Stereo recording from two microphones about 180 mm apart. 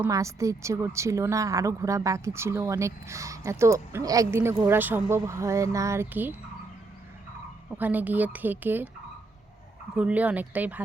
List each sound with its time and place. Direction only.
0.0 s speech: 15° right (ahead or behind)
7.8 s speech: 10° right (ahead or behind)
9.9 s speech: 5° right (ahead or behind)